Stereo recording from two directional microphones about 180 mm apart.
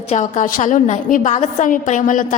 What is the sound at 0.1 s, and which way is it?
A woman's voice, 40° left (ahead or behind).